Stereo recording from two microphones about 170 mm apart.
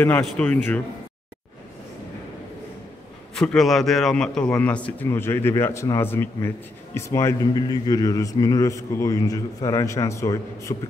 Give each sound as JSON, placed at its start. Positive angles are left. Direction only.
{"t": 0.2, "sound": "a man's voice", "side_deg": 10}
{"t": 3.3, "sound": "a man's voice", "side_deg": 5}